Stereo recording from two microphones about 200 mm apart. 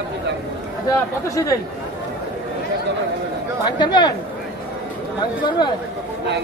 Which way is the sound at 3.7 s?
20° left (ahead or behind).